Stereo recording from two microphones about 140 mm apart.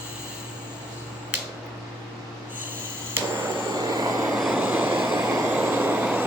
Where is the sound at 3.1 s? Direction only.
15° right (ahead or behind).